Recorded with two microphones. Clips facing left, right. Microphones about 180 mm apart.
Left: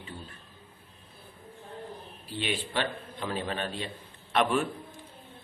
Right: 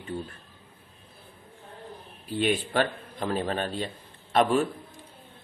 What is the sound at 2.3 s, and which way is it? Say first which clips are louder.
A man's voice: right 7 dB; 45° right (ahead or behind).